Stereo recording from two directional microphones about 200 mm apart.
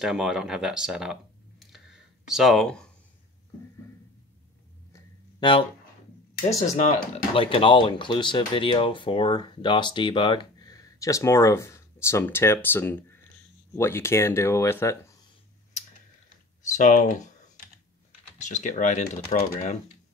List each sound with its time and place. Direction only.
0.0 s speech: 5° right (ahead or behind)
1.6 s clicking: centre (ahead or behind)
4.9 s a sound: 25° left (ahead or behind)
7.3 s speech: 25° left (ahead or behind)
16.7 s speech: 35° left (ahead or behind)
18.4 s speech: 35° left (ahead or behind)